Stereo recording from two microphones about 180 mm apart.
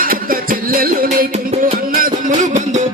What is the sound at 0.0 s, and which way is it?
Music, 50° right (ahead or behind).